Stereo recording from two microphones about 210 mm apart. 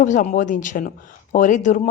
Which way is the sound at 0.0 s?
35° left (ahead or behind).